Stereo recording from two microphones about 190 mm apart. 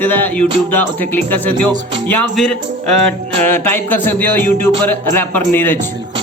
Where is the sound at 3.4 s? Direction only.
10° left (ahead or behind).